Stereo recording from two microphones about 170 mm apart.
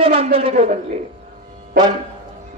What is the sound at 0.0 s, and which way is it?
Speech, 35° right (ahead or behind).